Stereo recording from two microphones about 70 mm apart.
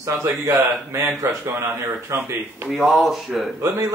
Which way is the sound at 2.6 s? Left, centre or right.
Centre.